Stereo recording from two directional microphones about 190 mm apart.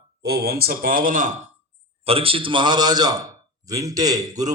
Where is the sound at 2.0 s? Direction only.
30° right (ahead or behind).